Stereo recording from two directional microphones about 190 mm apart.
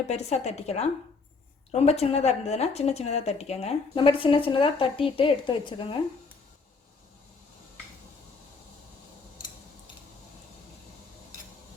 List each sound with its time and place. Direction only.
0.1 s speech: 35° left (ahead or behind)